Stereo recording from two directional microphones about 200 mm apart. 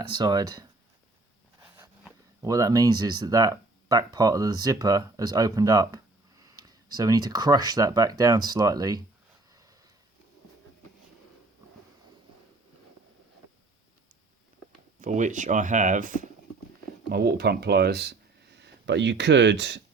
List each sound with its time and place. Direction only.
0.2 s speech: 20° right (ahead or behind)
15.0 s speech: 40° right (ahead or behind)
17.1 s speech: 50° right (ahead or behind)